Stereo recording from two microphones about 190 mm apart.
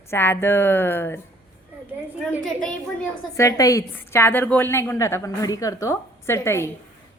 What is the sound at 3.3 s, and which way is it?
Speech, 15° left (ahead or behind).